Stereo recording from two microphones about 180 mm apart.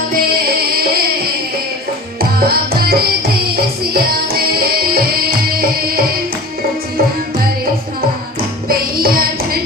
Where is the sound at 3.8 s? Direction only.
55° right (ahead or behind).